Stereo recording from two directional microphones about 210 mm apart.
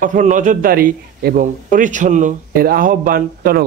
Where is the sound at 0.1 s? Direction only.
35° right (ahead or behind).